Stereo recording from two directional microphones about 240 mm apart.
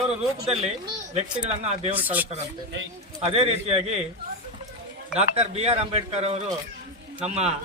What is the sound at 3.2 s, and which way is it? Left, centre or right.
Speech, right.